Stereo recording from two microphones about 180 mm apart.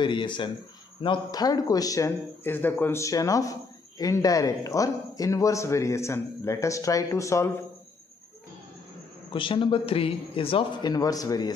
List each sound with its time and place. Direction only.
0.0 s a man's voice: 25° left (ahead or behind)
9.3 s a man's voice: 30° left (ahead or behind)